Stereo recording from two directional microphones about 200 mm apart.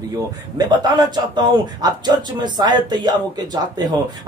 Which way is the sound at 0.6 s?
20° right (ahead or behind).